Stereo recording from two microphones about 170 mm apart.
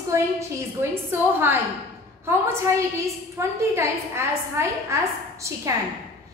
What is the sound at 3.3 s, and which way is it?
A woman's voice, 15° right (ahead or behind).